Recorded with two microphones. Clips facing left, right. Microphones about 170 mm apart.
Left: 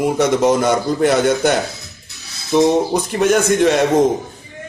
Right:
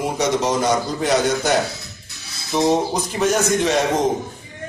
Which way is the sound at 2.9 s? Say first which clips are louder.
Left 4 dB; 55° left (ahead or behind).